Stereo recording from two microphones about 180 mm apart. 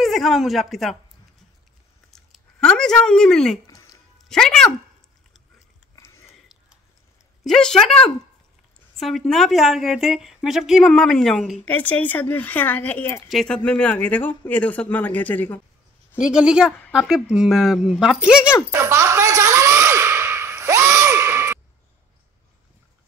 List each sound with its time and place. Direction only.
0.0 s speech: centre (ahead or behind)
2.0 s a sound: 5° left (ahead or behind)
3.6 s music: 20° left (ahead or behind)
4.3 s a woman's voice: 5° left (ahead or behind)
5.9 s sniff: 15° left (ahead or behind)
7.4 s a woman's voice: 5° left (ahead or behind)
8.9 s a woman's voice: centre (ahead or behind)
16.2 s a woman's voice: 5° right (ahead or behind)
16.9 s a sound: 5° right (ahead or behind)